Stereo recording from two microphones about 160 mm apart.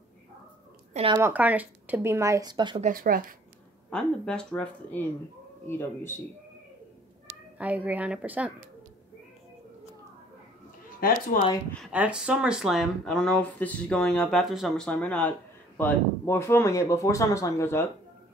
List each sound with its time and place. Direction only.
1.0 s speech: 45° right (ahead or behind)
1.3 s speech: 10° right (ahead or behind); by 2.8 s 30° right (ahead or behind)
2.8 s speech: 65° right (ahead or behind)
3.9 s speech: 5° left (ahead or behind)
7.5 s speech: 10° right (ahead or behind)
11.0 s speech: 65° left (ahead or behind)
11.9 s speech: 10° right (ahead or behind); by 17.8 s 15° left (ahead or behind)